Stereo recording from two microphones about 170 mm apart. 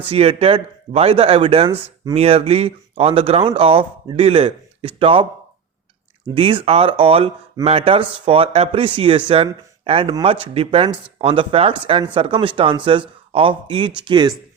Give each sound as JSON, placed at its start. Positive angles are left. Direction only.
{"t": 0.1, "sound": "speech", "side_deg": -35}
{"t": 6.3, "sound": "speech", "side_deg": -30}